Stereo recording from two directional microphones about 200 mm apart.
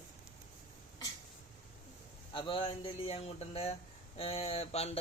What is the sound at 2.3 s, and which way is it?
Speech, 25° left (ahead or behind).